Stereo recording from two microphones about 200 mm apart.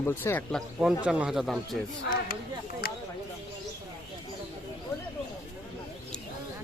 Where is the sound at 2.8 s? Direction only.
50° left (ahead or behind).